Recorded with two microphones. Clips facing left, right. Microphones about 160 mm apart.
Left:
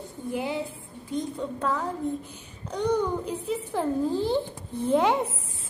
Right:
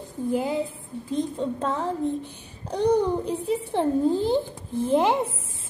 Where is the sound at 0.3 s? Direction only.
40° right (ahead or behind).